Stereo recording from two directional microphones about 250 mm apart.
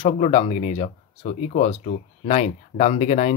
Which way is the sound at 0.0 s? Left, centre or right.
Left.